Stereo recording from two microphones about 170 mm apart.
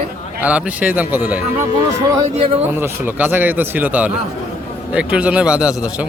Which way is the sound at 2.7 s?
10° right (ahead or behind).